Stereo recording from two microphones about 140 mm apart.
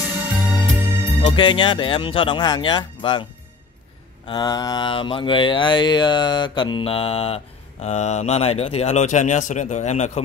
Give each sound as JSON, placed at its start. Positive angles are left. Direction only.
{"t": 0.6, "sound": "music", "side_deg": -15}
{"t": 1.2, "sound": "speech", "side_deg": 35}
{"t": 4.3, "sound": "speech", "side_deg": 30}